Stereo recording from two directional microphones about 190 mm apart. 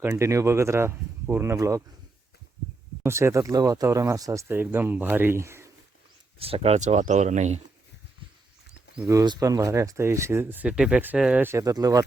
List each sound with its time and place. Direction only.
0.0 s speech: 15° right (ahead or behind)
3.0 s speech: 15° right (ahead or behind)
6.4 s speech: 30° right (ahead or behind)
9.0 s speech: 20° right (ahead or behind)